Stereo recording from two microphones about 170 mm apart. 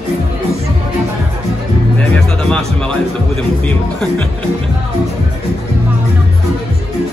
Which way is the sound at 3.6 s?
5° left (ahead or behind).